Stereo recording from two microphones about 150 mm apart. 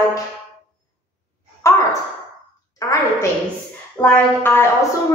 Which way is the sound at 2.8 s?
20° left (ahead or behind).